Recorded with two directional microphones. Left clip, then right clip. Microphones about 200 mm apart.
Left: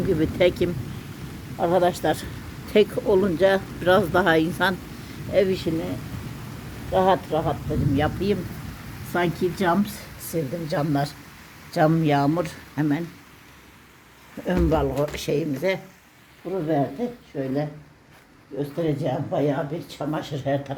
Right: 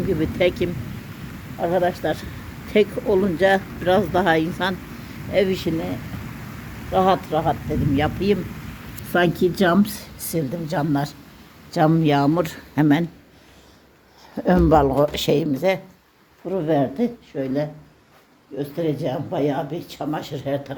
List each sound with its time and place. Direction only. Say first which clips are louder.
0.2 s speech: even; 5° left (ahead or behind)
1.5 s speech: even; 25° left (ahead or behind)
2.7 s speech: right 1 dB; centre (ahead or behind)
5.3 s speech: right 1 dB; 10° right (ahead or behind)
6.9 s speech: right 2 dB; 15° right (ahead or behind)
9.6 s speech: right 4 dB; 25° right (ahead or behind)
10.7 s speech: right 1 dB; 5° right (ahead or behind); by 13.1 s 25° right (ahead or behind)
14.4 s speech: right 7 dB; 20° right (ahead or behind)
17.3 s speech: right 3 dB; 5° right (ahead or behind)